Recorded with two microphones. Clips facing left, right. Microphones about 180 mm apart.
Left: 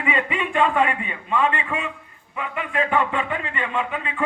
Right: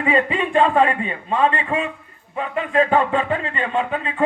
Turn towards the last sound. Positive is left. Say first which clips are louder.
# right 4 dB
turn(degrees=-35)  # may be behind; listen again after turning